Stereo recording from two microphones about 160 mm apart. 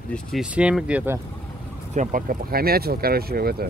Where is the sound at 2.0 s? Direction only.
55° right (ahead or behind); by 3.6 s 75° right (ahead or behind).